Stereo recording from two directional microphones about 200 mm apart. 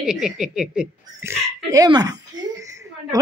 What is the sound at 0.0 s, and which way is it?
Speech, 5° right (ahead or behind).